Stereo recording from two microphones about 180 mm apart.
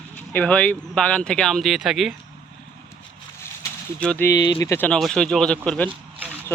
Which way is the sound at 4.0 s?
5° left (ahead or behind).